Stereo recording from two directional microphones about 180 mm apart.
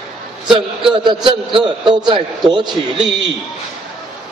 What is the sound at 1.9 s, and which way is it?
Speech, 25° right (ahead or behind).